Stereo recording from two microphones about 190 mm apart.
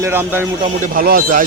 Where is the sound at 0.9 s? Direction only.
50° right (ahead or behind).